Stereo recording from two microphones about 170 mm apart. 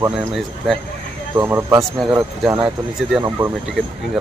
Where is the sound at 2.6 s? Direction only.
5° right (ahead or behind).